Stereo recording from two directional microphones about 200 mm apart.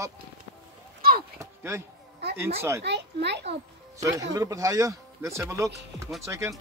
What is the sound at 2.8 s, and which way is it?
Speech, 60° right (ahead or behind).